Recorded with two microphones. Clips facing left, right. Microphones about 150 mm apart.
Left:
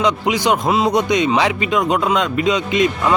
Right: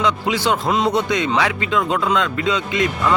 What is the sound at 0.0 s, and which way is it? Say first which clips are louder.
A man's voice: left 2 dB; 15° left (ahead or behind).